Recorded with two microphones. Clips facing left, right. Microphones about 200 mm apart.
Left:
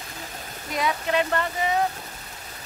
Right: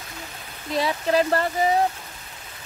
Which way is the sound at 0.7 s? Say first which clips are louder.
Right 3 dB; 30° right (ahead or behind).